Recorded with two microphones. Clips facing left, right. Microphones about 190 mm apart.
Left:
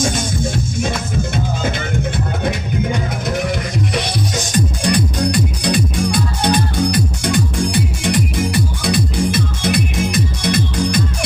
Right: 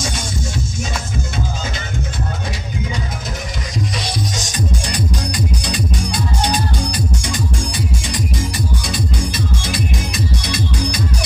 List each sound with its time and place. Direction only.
4.8 s music: 60° left (ahead or behind)